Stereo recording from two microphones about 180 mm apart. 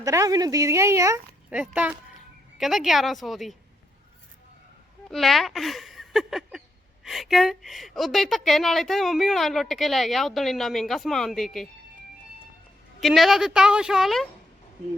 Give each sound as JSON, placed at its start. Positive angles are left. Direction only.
{"t": 0.0, "sound": "a woman's voice", "side_deg": -20}
{"t": 5.0, "sound": "a woman's voice", "side_deg": 0}
{"t": 13.0, "sound": "a woman's voice", "side_deg": 0}